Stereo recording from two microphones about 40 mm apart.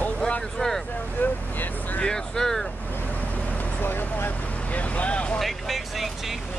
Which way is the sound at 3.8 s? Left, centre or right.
Left.